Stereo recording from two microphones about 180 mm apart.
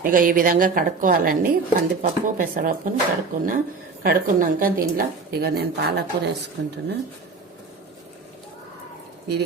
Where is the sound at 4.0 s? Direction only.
50° right (ahead or behind).